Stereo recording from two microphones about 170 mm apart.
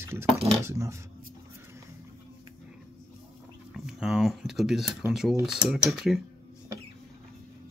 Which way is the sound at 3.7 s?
5° right (ahead or behind).